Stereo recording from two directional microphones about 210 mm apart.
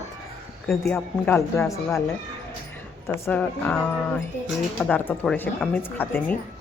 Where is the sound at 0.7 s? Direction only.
Centre (ahead or behind).